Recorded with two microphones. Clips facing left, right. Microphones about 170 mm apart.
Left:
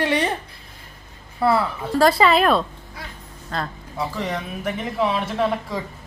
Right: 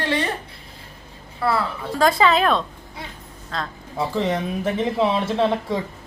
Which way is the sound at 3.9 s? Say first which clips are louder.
Right 4 dB; 25° right (ahead or behind).